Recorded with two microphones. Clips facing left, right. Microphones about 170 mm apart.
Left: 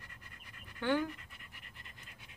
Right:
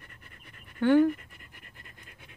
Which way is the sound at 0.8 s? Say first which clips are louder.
Right 12 dB; 50° right (ahead or behind).